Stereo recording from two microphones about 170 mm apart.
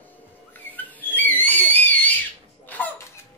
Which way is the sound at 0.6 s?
10° left (ahead or behind).